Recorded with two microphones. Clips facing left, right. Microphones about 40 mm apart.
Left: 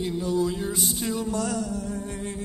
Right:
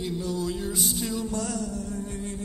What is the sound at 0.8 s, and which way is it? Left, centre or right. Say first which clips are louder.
Music: even; centre.